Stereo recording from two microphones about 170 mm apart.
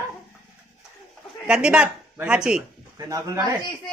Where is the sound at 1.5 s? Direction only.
5° right (ahead or behind).